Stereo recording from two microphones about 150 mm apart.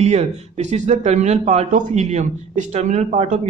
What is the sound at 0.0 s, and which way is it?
Speech, 45° right (ahead or behind).